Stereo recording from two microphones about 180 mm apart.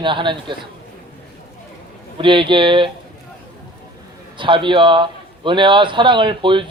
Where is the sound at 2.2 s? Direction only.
25° right (ahead or behind).